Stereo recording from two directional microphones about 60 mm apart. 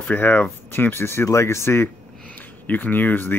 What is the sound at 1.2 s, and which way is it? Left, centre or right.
Speech, left.